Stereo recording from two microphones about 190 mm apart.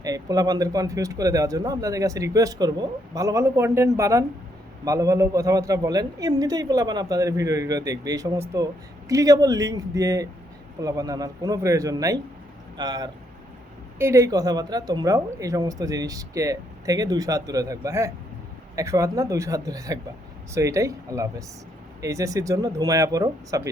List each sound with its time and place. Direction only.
0.0 s a man's voice: 20° right (ahead or behind)